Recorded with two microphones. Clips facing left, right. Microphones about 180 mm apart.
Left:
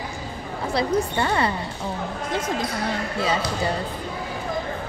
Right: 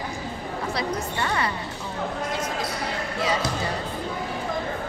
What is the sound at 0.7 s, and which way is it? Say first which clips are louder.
Speech: left 8 dB; 30° left (ahead or behind).